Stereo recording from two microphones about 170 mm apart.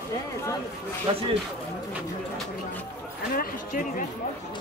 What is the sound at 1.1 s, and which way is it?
Speech, 30° right (ahead or behind).